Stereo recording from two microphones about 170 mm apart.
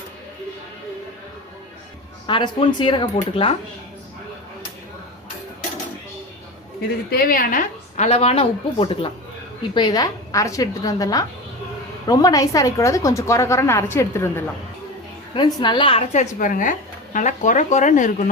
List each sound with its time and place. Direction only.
2.2 s a woman's voice: 30° left (ahead or behind)
7.1 s a woman's voice: 55° left (ahead or behind)